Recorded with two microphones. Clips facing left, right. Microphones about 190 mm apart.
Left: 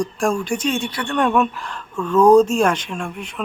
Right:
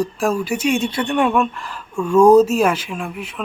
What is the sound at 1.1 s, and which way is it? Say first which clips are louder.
Speech: left 1 dB; 5° right (ahead or behind).